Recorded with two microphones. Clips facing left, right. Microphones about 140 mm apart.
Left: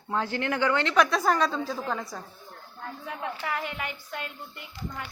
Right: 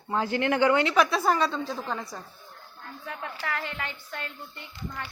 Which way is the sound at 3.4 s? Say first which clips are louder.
Right 1 dB; 15° left (ahead or behind).